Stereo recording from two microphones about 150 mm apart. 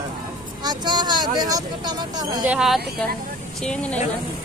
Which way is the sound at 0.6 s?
30° right (ahead or behind).